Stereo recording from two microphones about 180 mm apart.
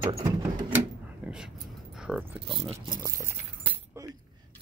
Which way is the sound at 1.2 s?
5° right (ahead or behind).